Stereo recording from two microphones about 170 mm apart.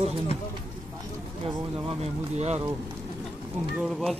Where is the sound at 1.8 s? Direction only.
40° right (ahead or behind).